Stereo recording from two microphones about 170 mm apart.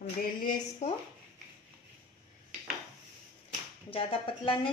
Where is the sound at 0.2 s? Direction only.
55° left (ahead or behind).